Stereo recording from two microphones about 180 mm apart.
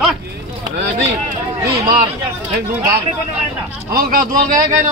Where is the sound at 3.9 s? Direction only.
55° right (ahead or behind).